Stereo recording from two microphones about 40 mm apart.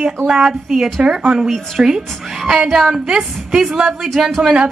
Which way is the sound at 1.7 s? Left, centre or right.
Centre.